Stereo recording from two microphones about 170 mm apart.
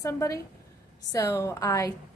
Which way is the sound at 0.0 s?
20° left (ahead or behind).